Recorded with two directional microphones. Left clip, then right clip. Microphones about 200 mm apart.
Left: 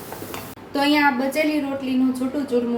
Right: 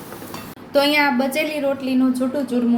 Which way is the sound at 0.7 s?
40° right (ahead or behind).